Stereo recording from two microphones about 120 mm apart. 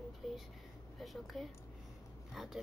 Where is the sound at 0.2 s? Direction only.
Centre (ahead or behind).